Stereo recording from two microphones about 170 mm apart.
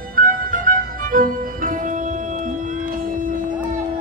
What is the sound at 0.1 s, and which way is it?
Music, 55° right (ahead or behind).